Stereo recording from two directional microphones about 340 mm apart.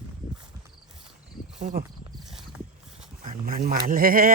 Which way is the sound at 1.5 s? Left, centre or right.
Right.